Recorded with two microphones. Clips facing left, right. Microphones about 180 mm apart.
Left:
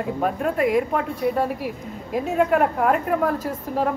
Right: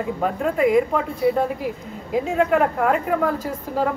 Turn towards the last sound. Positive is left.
turn(degrees=0)  # may be behind; listen again after turning